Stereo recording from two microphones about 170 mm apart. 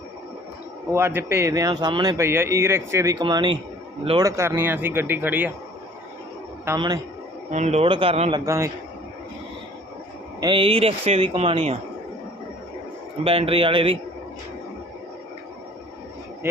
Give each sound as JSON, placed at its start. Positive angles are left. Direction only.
{"t": 0.9, "sound": "speech", "side_deg": -15}
{"t": 6.7, "sound": "a man's voice", "side_deg": -25}
{"t": 7.5, "sound": "speech", "side_deg": -40}
{"t": 8.4, "sound": "speech", "side_deg": -15}
{"t": 10.4, "sound": "speech", "side_deg": -30}
{"t": 13.2, "sound": "speech", "side_deg": -35}